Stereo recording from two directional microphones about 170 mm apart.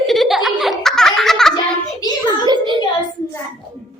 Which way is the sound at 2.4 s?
25° right (ahead or behind).